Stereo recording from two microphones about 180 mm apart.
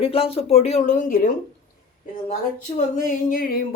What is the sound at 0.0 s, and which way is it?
Speech, 30° left (ahead or behind).